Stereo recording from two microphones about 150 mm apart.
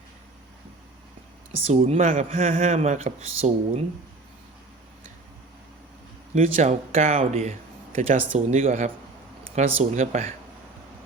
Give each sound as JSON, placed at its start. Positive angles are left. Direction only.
{"t": 1.6, "sound": "speech", "side_deg": -45}
{"t": 6.3, "sound": "speech", "side_deg": -50}